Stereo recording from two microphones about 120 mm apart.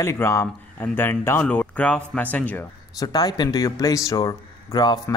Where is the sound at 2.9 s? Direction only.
30° left (ahead or behind).